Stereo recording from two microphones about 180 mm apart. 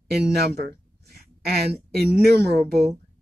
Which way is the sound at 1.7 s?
60° right (ahead or behind).